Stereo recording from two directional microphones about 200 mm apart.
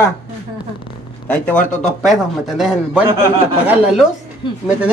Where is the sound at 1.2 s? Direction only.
5° left (ahead or behind).